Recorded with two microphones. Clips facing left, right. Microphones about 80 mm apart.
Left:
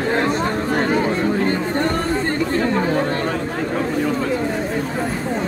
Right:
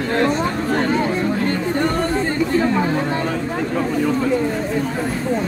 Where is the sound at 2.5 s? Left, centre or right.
Centre.